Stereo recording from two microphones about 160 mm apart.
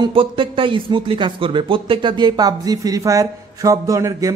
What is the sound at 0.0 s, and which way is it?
A man's voice, 30° right (ahead or behind).